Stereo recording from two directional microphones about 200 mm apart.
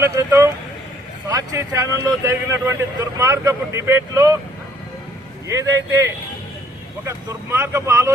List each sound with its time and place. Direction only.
0.0 s speech: 15° right (ahead or behind)
5.5 s speech: 15° right (ahead or behind)
7.0 s speech: 10° right (ahead or behind)